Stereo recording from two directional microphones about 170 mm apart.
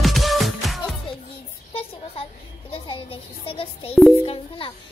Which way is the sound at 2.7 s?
35° left (ahead or behind).